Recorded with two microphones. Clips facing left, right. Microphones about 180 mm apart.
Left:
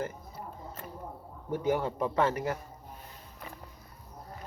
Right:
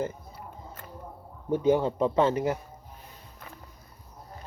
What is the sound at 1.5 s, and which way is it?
Speech, 25° right (ahead or behind).